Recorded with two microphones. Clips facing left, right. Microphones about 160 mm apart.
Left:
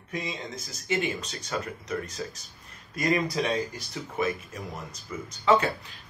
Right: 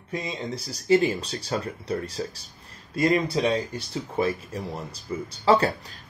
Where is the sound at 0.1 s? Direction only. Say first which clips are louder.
Right 4 dB; 35° right (ahead or behind).